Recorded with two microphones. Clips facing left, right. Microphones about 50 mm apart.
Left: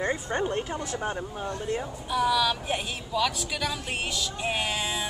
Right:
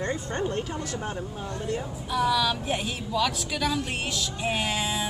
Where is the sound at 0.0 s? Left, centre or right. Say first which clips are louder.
Left 1 dB; centre.